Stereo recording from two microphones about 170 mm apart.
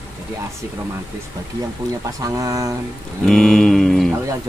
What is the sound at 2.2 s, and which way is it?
Speech, 20° right (ahead or behind).